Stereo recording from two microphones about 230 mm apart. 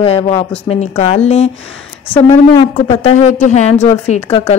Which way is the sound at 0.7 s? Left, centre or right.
Left.